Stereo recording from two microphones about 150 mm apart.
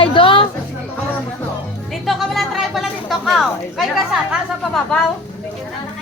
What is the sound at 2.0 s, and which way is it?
Speech, centre (ahead or behind).